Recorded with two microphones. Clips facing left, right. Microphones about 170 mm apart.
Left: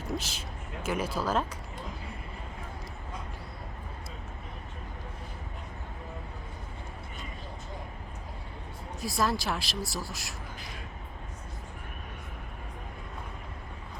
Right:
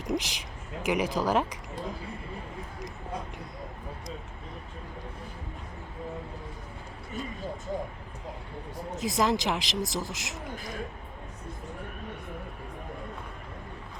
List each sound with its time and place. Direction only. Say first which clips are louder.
0.0 s speech: right 4 dB; 15° right (ahead or behind)
9.0 s speech: right 3 dB; 20° right (ahead or behind)